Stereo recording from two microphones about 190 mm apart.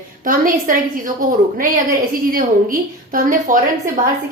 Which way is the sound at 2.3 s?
50° right (ahead or behind).